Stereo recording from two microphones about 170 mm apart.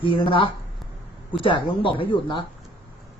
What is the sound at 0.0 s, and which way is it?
Speech, 30° left (ahead or behind).